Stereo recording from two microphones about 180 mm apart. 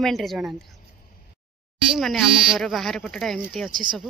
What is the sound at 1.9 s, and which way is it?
Speech, centre (ahead or behind).